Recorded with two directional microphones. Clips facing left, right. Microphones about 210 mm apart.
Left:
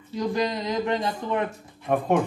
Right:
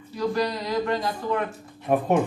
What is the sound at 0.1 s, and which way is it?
Speech, 20° left (ahead or behind).